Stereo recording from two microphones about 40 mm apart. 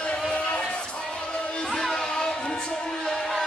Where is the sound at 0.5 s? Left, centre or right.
Left.